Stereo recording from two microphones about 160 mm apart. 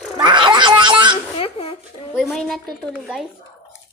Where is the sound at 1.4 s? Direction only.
40° left (ahead or behind).